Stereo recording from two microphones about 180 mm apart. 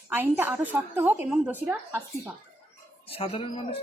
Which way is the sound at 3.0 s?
30° left (ahead or behind).